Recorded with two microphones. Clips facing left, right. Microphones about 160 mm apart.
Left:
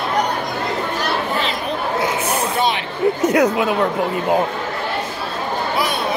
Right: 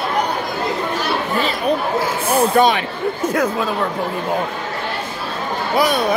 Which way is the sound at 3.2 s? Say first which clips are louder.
Left 2 dB; 20° left (ahead or behind).